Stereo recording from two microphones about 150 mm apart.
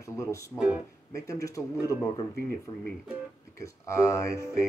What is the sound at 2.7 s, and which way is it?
Speech, 25° left (ahead or behind).